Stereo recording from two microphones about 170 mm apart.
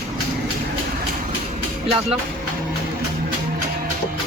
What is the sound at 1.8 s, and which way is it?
Speech, 35° right (ahead or behind).